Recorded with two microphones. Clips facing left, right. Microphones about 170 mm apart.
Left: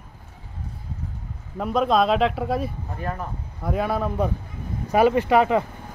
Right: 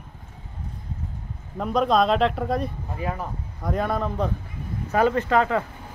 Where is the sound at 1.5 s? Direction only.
Centre (ahead or behind).